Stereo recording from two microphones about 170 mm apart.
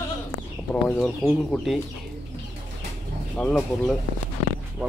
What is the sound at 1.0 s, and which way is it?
Speech, centre (ahead or behind).